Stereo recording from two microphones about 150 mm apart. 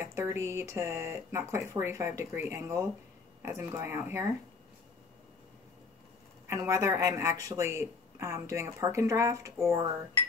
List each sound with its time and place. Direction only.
0.0 s speech: 15° right (ahead or behind)
6.4 s speech: 20° right (ahead or behind)